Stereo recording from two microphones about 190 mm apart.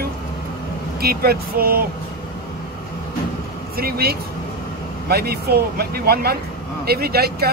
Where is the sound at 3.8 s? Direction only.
55° right (ahead or behind).